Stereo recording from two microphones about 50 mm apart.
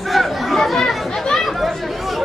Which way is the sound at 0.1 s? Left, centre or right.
Centre.